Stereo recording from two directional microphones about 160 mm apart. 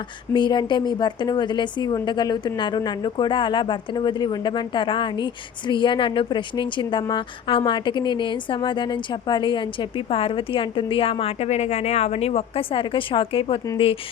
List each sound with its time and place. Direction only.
0.3 s a woman's voice: 30° left (ahead or behind)